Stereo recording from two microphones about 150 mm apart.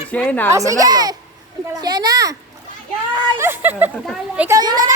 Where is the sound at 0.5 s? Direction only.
20° right (ahead or behind).